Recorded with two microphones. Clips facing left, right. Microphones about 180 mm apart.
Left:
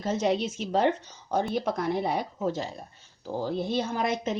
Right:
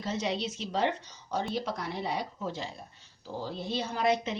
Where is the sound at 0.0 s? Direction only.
50° left (ahead or behind).